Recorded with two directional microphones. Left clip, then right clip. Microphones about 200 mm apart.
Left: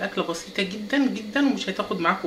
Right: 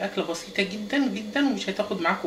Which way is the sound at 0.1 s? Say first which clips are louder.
Left 1 dB; 20° left (ahead or behind).